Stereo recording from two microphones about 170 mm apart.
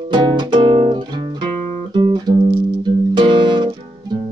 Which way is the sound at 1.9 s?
25° right (ahead or behind).